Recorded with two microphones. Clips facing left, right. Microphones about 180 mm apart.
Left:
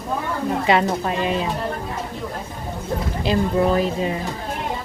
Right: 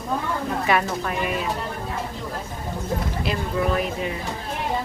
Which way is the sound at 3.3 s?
30° left (ahead or behind).